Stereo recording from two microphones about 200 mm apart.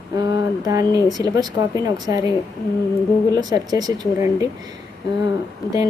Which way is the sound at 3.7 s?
20° right (ahead or behind).